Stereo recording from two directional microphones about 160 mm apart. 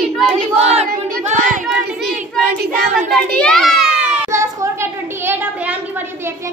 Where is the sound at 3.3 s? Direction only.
5° left (ahead or behind).